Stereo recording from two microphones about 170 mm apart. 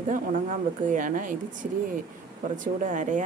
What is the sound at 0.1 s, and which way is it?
Speech, 50° right (ahead or behind).